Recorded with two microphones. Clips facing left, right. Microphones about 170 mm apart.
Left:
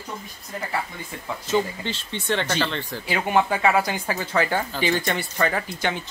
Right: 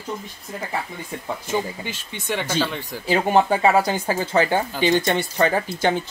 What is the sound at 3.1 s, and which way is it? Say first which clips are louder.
Speech: right 4 dB; 35° right (ahead or behind).